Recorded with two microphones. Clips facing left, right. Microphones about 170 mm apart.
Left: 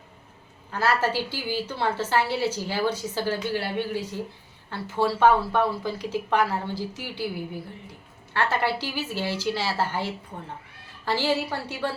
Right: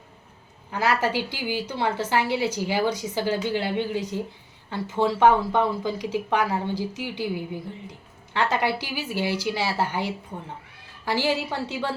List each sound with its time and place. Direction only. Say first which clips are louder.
0.7 s a woman's voice: right 1 dB; 15° right (ahead or behind)